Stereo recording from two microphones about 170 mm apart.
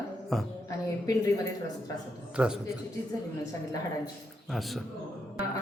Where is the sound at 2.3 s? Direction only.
5° right (ahead or behind).